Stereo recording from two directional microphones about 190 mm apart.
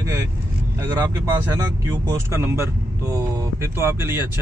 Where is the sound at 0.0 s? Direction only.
15° right (ahead or behind).